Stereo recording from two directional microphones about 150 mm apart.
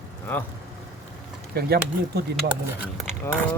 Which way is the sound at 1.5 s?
90° right.